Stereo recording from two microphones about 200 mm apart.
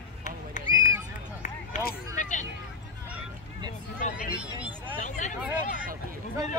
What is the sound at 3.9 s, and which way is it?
Speech, 40° left (ahead or behind).